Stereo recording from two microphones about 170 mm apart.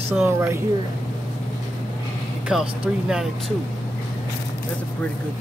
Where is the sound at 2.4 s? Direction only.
5° right (ahead or behind).